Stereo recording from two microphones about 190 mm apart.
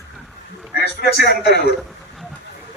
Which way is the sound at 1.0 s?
60° left (ahead or behind).